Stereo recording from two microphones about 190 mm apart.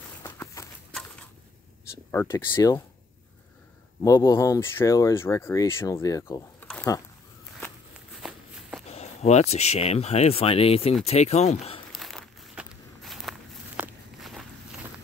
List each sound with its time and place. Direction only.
0.2 s a sound: 15° left (ahead or behind)
2.2 s speech: 20° left (ahead or behind)
4.0 s speech: 20° left (ahead or behind)
8.2 s walk: 5° right (ahead or behind)
8.8 s speech: 35° left (ahead or behind)
11.9 s walk: centre (ahead or behind)